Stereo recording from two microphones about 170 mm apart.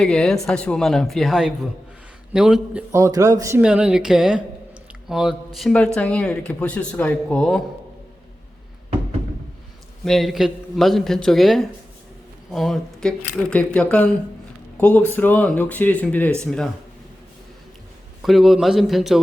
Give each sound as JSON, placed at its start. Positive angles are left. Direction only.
{"t": 0.0, "sound": "a man's voice", "side_deg": 5}
{"t": 2.9, "sound": "a man's voice", "side_deg": -20}
{"t": 3.6, "sound": "a man's voice", "side_deg": -5}
{"t": 10.0, "sound": "a man's voice", "side_deg": 0}
{"t": 18.2, "sound": "a man's voice", "side_deg": 0}